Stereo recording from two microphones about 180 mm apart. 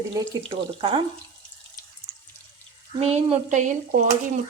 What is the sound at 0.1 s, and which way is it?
Speech, 20° right (ahead or behind).